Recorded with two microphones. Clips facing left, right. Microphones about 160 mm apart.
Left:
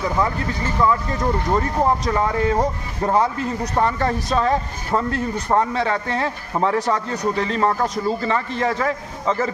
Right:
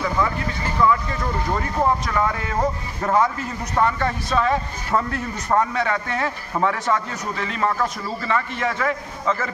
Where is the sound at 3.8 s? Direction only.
35° left (ahead or behind).